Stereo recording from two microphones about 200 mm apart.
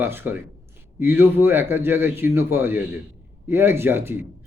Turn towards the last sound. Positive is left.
turn(degrees=-10)  # may be behind; listen again after turning